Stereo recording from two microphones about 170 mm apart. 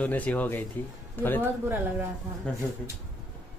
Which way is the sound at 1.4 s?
10° right (ahead or behind).